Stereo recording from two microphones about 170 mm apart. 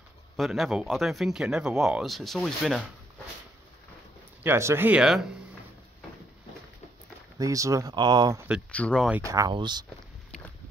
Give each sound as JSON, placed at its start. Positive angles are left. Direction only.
{"t": 0.4, "sound": "speech", "side_deg": 0}
{"t": 4.4, "sound": "speech", "side_deg": -15}
{"t": 7.3, "sound": "speech", "side_deg": -20}
{"t": 8.7, "sound": "speech", "side_deg": 5}
{"t": 9.2, "sound": "speech", "side_deg": -20}